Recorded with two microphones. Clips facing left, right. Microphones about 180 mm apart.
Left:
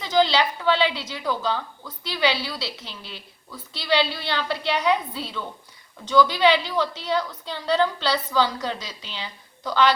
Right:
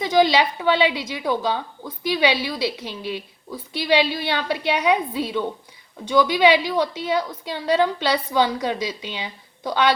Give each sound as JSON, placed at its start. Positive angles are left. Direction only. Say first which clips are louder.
{"t": 0.0, "sound": "a woman's voice", "louder": "right 3 dB", "side_deg": -15}